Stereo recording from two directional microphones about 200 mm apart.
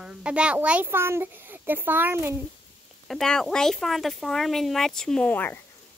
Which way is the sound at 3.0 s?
5° left (ahead or behind).